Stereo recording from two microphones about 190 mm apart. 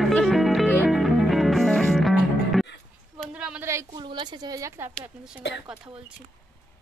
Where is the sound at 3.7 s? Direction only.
20° right (ahead or behind).